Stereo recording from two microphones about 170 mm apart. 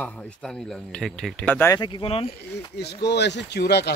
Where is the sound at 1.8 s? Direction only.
30° left (ahead or behind).